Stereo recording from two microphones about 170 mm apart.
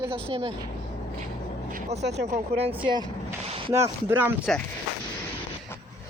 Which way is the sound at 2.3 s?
35° right (ahead or behind).